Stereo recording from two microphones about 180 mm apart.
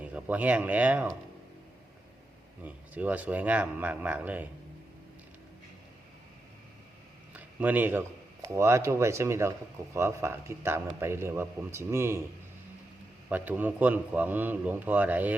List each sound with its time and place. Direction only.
0.0 s speech: 10° right (ahead or behind)
2.6 s speech: 10° right (ahead or behind)
7.3 s speech: 10° right (ahead or behind)
13.3 s speech: 10° right (ahead or behind)